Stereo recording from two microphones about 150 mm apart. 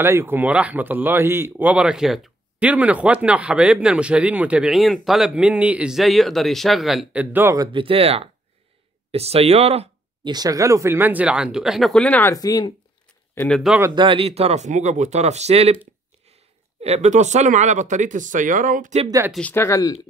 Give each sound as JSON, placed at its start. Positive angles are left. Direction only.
{"t": 0.0, "sound": "a man's voice", "side_deg": -15}
{"t": 7.5, "sound": "speech", "side_deg": -30}
{"t": 10.2, "sound": "a man's voice", "side_deg": -25}
{"t": 12.4, "sound": "speech", "side_deg": 25}
{"t": 13.3, "sound": "speech", "side_deg": 15}
{"t": 13.9, "sound": "speech", "side_deg": -35}
{"t": 16.8, "sound": "speech", "side_deg": -45}
{"t": 19.5, "sound": "speech", "side_deg": 20}